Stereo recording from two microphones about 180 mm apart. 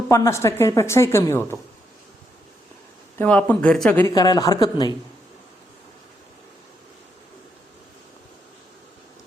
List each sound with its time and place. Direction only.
0.1 s a woman's voice: 15° left (ahead or behind)
3.2 s a woman's voice: 10° left (ahead or behind)
4.1 s speech: 20° left (ahead or behind)